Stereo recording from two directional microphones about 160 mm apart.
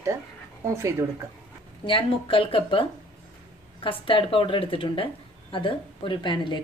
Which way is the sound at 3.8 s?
35° left (ahead or behind).